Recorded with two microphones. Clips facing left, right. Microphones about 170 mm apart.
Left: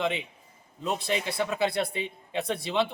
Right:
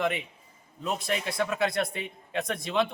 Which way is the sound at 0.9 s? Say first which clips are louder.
Even; 30° left (ahead or behind).